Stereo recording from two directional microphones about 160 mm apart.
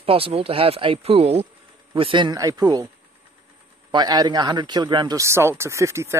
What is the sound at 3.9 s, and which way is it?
Speech, 25° right (ahead or behind).